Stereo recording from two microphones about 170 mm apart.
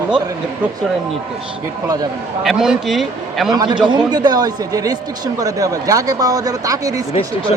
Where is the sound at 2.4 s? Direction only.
Centre (ahead or behind).